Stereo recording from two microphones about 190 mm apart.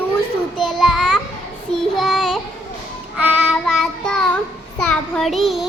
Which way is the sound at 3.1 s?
5° right (ahead or behind).